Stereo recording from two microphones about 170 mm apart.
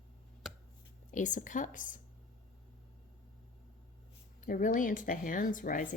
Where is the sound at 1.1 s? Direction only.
50° left (ahead or behind).